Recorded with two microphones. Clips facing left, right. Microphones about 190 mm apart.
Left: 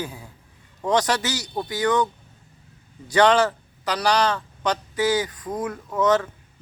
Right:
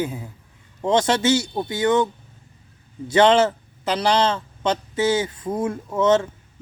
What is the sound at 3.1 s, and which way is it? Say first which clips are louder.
A man's voice: right 2 dB; 25° right (ahead or behind).